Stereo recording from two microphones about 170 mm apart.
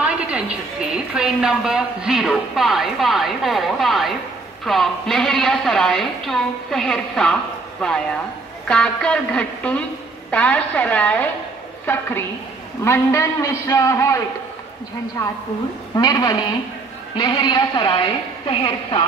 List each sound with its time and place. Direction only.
0.0 s a woman's voice: 5° right (ahead or behind); by 14.2 s 15° left (ahead or behind)
15.9 s a woman's voice: 25° left (ahead or behind)